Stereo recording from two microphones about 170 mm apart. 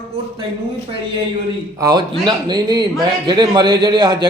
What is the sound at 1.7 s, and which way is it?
A man's voice, 20° right (ahead or behind).